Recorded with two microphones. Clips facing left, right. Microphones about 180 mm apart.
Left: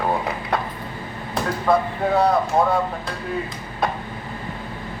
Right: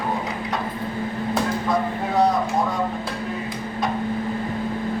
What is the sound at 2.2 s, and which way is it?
Speech, 60° left (ahead or behind).